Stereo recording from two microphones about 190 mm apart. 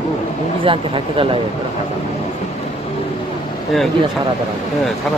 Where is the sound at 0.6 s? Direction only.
30° right (ahead or behind).